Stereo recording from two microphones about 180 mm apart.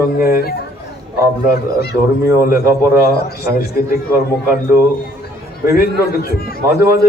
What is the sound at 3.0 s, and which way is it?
Speech, 60° left (ahead or behind).